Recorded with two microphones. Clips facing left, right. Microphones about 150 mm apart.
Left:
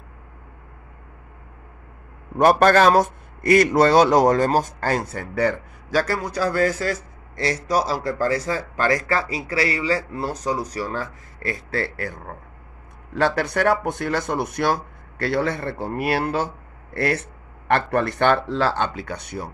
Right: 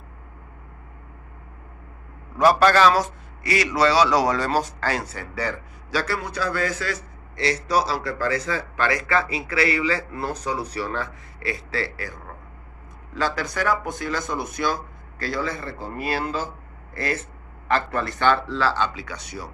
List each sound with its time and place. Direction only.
2.3 s a man's voice: 55° left (ahead or behind)